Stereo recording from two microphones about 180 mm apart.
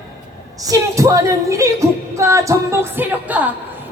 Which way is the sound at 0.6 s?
20° right (ahead or behind).